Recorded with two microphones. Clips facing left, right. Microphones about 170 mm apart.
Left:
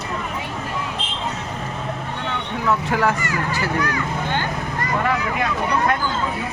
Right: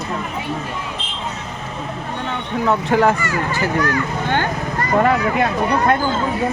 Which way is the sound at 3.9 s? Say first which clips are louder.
Right 4 dB; 50° right (ahead or behind).